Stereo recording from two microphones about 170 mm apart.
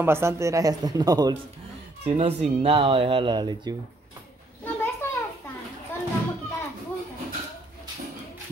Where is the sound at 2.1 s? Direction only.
35° right (ahead or behind).